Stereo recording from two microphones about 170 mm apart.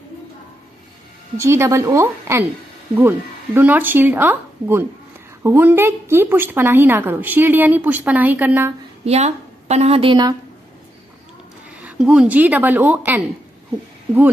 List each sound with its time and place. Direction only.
1.4 s a woman's voice: 15° right (ahead or behind)
9.0 s a woman's voice: 40° right (ahead or behind)
11.8 s a woman's voice: 5° right (ahead or behind)